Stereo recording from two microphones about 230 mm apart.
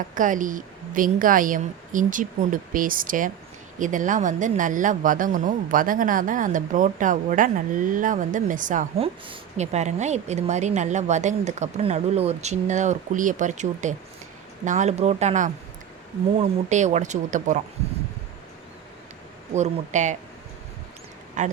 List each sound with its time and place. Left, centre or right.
0.1 s speech: right
19.5 s speech: right
21.4 s speech: right